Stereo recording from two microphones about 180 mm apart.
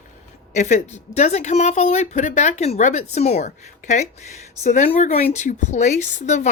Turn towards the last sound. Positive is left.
turn(degrees=40)  # may be behind; listen again after turning